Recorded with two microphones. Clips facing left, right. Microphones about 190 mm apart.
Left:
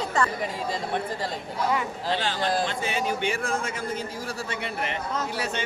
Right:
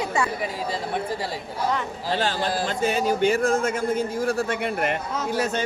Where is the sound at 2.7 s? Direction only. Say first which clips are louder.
Right 5 dB; 40° right (ahead or behind).